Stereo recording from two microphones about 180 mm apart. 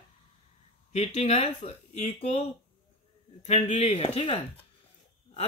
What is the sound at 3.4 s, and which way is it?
Speech, 40° left (ahead or behind).